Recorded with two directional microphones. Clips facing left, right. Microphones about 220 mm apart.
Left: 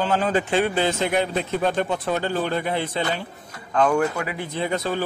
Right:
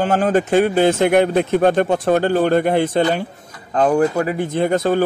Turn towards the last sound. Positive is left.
turn(degrees=-50)  # may be behind; listen again after turning